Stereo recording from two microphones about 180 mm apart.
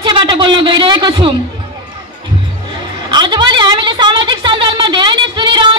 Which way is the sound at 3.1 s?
25° right (ahead or behind).